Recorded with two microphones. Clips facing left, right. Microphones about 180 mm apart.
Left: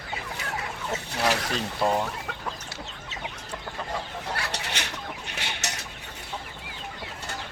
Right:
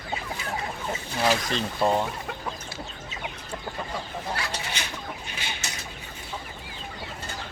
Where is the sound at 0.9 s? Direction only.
70° left (ahead or behind).